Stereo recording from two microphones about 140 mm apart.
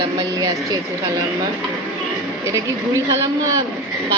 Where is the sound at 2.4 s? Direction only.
20° right (ahead or behind).